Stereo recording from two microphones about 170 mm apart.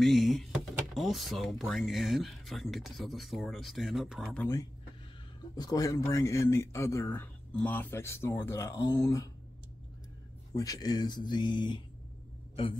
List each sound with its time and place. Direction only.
0.0 s speech: centre (ahead or behind)
4.4 s a man's voice: 20° left (ahead or behind)
10.5 s speech: 20° left (ahead or behind)